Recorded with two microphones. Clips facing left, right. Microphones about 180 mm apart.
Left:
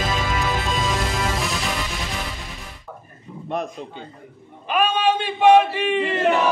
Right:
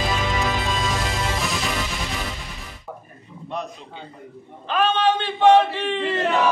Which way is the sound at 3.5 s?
50° left (ahead or behind).